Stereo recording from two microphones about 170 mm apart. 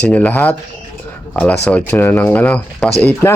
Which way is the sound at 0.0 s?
10° left (ahead or behind).